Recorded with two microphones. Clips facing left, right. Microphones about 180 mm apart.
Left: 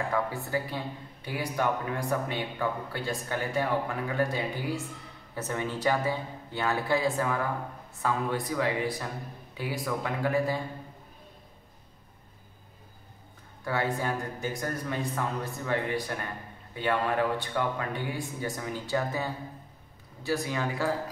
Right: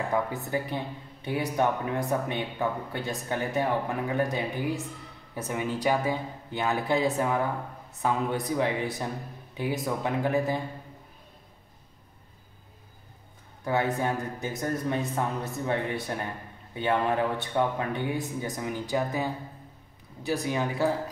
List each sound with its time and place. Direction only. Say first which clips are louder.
0.1 s speech: right 1 dB; 20° right (ahead or behind)
13.7 s speech: right 3 dB; 20° right (ahead or behind)